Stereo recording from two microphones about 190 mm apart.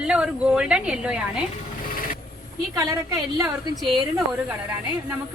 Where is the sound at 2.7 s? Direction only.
20° right (ahead or behind).